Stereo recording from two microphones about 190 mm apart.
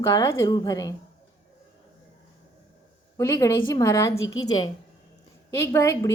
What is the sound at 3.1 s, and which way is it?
Speech, 15° left (ahead or behind).